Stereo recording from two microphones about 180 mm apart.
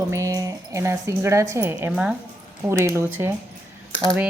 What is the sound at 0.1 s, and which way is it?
A woman's voice, 15° right (ahead or behind).